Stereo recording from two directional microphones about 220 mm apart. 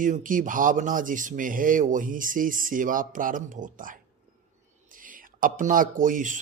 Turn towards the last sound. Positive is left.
turn(degrees=-35)  # may be behind; listen again after turning